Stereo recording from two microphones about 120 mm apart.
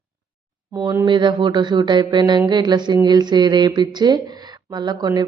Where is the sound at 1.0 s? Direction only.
40° right (ahead or behind).